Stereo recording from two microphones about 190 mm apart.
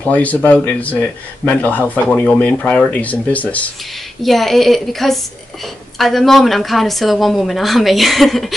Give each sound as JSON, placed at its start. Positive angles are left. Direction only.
{"t": 0.0, "sound": "a woman's voice", "side_deg": 5}